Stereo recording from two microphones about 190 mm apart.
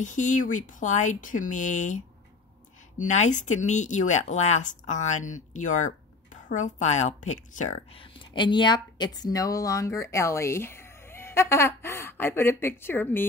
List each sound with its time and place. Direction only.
0.0 s a woman's voice: 40° left (ahead or behind); by 13.2 s 10° left (ahead or behind)